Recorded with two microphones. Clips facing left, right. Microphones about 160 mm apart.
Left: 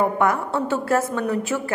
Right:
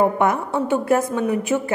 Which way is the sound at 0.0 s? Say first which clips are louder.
Right 2 dB; 20° right (ahead or behind).